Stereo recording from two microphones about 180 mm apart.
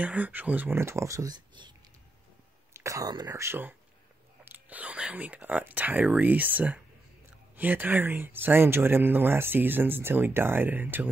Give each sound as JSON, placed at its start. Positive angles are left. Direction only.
{"t": 0.0, "sound": "speech", "side_deg": -10}
{"t": 2.7, "sound": "speech", "side_deg": -15}